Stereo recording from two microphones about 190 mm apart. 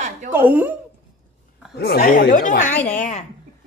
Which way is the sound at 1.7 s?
55° left (ahead or behind).